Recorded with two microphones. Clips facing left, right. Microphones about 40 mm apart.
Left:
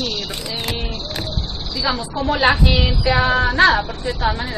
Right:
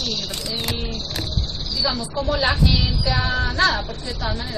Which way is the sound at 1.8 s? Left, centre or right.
Left.